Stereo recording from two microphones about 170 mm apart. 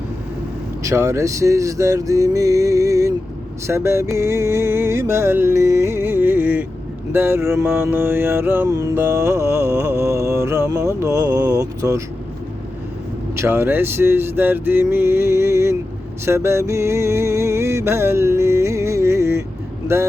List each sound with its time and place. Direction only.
0.8 s speech: 15° right (ahead or behind)
3.7 s mantra: 15° right (ahead or behind)
13.3 s mantra: 15° right (ahead or behind)
16.2 s music: 15° right (ahead or behind)